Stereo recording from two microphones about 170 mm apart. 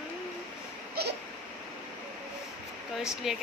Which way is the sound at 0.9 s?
70° right (ahead or behind).